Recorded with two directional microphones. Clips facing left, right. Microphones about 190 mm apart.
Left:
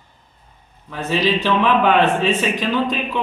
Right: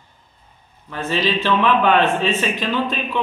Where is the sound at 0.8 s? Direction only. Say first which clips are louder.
Left 2 dB; 5° left (ahead or behind).